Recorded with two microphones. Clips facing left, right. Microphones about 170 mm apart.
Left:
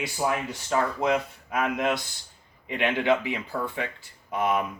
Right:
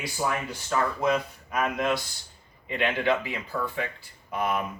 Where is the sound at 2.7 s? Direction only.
15° left (ahead or behind).